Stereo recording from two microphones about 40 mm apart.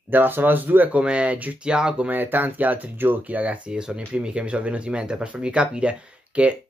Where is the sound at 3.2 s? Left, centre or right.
Right.